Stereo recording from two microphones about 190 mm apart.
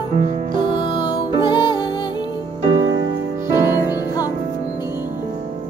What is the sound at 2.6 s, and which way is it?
Music, 25° right (ahead or behind).